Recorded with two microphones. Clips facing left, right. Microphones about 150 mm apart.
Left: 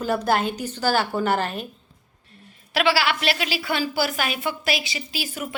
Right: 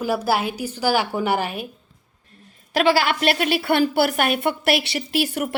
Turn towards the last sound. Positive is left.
turn(degrees=-65)  # may be behind; listen again after turning